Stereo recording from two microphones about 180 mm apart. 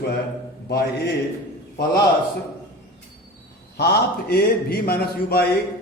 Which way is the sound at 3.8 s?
60° left (ahead or behind).